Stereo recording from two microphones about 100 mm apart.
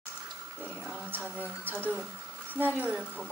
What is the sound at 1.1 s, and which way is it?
Speech, 20° right (ahead or behind).